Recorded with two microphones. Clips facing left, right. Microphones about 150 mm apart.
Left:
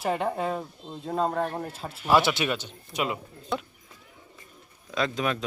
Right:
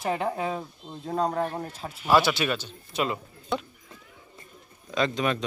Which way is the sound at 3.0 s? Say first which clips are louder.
Right 1 dB; 5° left (ahead or behind).